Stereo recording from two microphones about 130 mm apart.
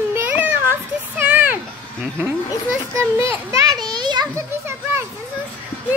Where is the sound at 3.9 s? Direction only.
35° right (ahead or behind).